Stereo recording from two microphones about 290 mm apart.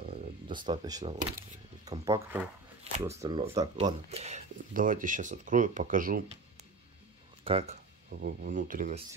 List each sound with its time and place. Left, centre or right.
0.0 s speech: centre
7.4 s speech: right